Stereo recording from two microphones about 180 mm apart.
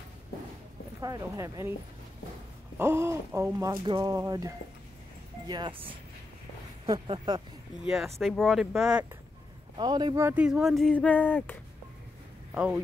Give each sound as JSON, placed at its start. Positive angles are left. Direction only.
{"t": 1.0, "sound": "speech", "side_deg": -20}
{"t": 2.8, "sound": "speech", "side_deg": -15}
{"t": 8.2, "sound": "speech", "side_deg": 0}
{"t": 9.8, "sound": "speech", "side_deg": -25}
{"t": 12.5, "sound": "speech", "side_deg": -5}